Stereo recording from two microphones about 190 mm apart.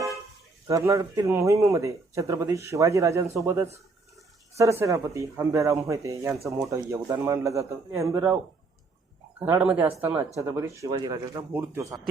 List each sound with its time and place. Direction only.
0.7 s speech: 15° right (ahead or behind)
9.4 s speech: 5° right (ahead or behind)